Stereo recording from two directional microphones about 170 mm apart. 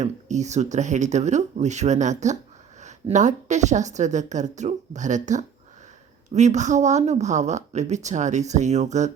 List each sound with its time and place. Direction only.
0.0 s speech: 45° right (ahead or behind)